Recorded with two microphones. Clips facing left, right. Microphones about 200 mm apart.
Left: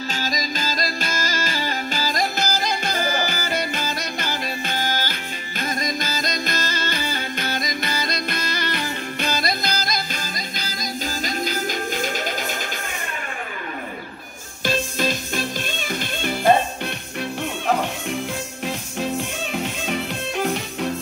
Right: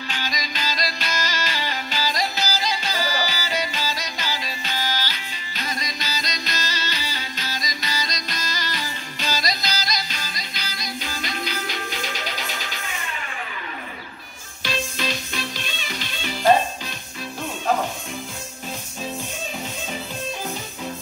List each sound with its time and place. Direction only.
0.1 s music: 45° left (ahead or behind)
14.6 s music: 45° left (ahead or behind)
19.9 s music: 75° left (ahead or behind)